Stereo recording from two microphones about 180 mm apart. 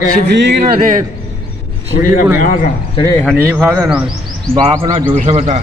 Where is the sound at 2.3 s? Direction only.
50° left (ahead or behind).